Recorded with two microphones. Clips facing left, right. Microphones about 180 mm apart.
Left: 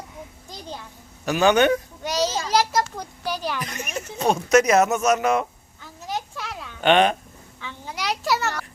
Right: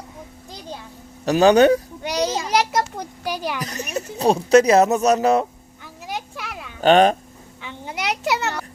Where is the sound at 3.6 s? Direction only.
40° right (ahead or behind).